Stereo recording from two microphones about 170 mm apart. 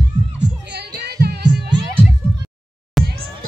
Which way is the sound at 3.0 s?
Centre (ahead or behind).